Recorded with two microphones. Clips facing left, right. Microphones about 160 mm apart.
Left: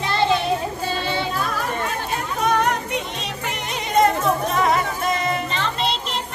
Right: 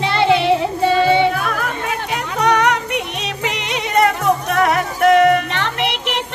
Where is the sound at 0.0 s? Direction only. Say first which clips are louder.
Right 5 dB; 85° right.